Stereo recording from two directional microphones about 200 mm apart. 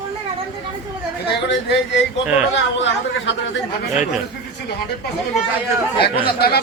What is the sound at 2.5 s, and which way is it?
Speech, 60° left (ahead or behind).